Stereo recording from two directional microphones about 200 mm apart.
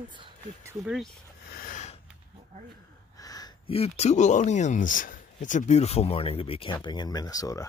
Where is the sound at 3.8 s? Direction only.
35° left (ahead or behind); by 7.7 s 15° left (ahead or behind).